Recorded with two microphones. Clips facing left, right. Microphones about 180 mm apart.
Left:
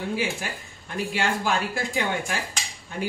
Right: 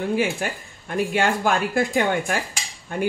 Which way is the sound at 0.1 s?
55° right (ahead or behind).